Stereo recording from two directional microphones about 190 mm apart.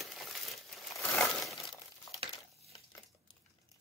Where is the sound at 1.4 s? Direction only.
Centre (ahead or behind).